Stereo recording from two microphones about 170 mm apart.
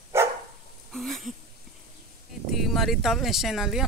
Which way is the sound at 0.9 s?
Centre (ahead or behind).